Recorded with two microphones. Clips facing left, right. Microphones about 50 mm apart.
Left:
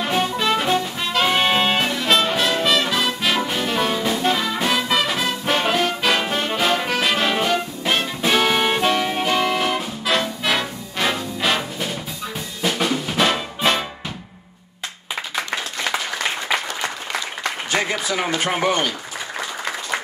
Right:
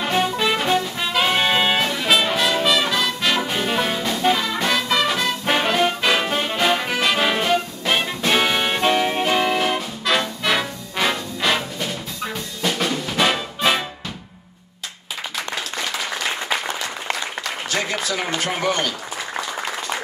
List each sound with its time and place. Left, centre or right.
0.0 s music: centre
12.6 s drum kit: centre
13.2 s music: centre
17.4 s applause: left
18.4 s speech: left